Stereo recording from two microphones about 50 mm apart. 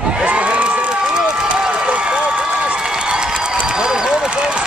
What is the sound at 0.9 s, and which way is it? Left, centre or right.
Run, centre.